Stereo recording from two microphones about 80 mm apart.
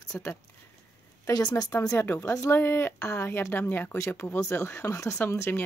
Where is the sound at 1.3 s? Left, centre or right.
Left.